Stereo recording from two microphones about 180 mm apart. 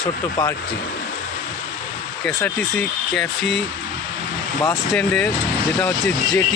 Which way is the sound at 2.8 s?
Centre (ahead or behind).